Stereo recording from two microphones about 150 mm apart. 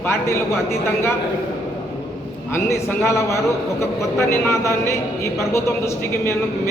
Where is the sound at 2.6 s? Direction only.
20° left (ahead or behind).